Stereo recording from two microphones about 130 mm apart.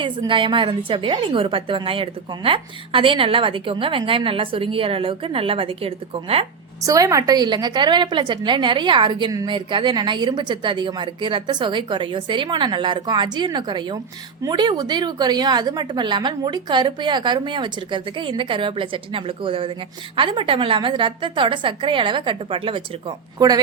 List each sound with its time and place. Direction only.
0.0 s a woman's voice: 40° right (ahead or behind)
6.8 s a woman's voice: 25° right (ahead or behind)